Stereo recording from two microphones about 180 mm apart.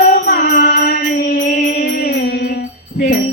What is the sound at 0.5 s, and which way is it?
Music, 50° left (ahead or behind).